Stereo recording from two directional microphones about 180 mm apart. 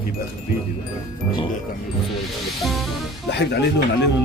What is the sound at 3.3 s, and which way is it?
Speech, 70° left (ahead or behind).